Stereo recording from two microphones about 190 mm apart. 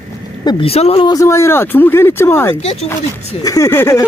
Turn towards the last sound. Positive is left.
turn(degrees=15)  # may be behind; listen again after turning